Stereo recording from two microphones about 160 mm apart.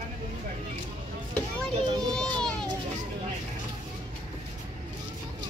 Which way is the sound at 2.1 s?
5° left (ahead or behind).